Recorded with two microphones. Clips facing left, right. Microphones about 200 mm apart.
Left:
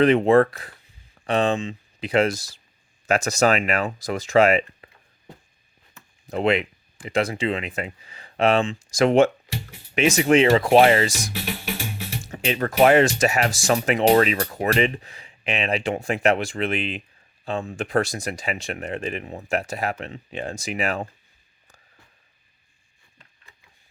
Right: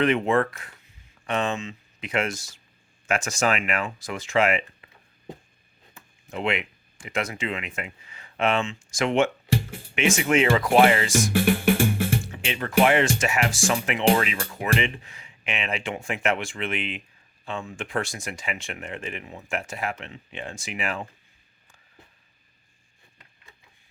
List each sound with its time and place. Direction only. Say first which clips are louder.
0.0 s speech: left 6 dB; 35° left (ahead or behind)
6.2 s speech: left 6 dB; 35° left (ahead or behind)
9.5 s music: right 8 dB; 50° right (ahead or behind)
9.9 s speech: left 4 dB; 35° left (ahead or behind)
11.3 s music: right 10 dB; 50° right (ahead or behind)
12.2 s music: left 6 dB; 40° left (ahead or behind)
12.8 s speech: left 5 dB; 40° left (ahead or behind)